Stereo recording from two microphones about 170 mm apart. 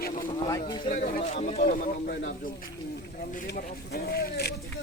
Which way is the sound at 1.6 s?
50° left (ahead or behind).